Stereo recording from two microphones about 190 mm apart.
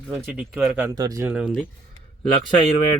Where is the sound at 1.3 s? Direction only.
5° right (ahead or behind).